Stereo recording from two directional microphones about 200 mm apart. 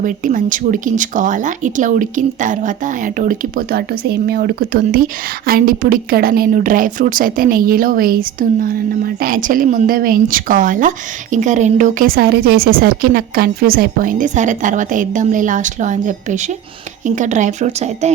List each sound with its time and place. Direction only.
0.0 s a woman's voice: 40° right (ahead or behind)